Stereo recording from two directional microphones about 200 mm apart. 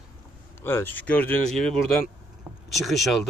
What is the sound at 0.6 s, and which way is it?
Speech, 10° left (ahead or behind).